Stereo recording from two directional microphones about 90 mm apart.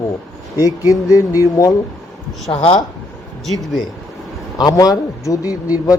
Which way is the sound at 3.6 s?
Centre (ahead or behind).